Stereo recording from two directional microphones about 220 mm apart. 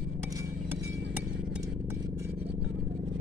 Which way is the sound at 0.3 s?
15° right (ahead or behind).